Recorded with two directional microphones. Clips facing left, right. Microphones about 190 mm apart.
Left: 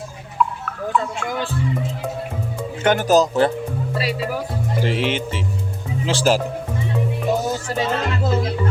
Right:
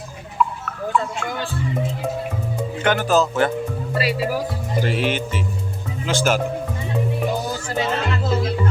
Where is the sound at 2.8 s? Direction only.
40° left (ahead or behind).